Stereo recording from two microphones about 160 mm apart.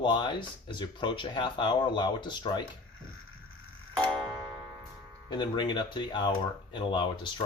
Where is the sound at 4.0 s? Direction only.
5° left (ahead or behind).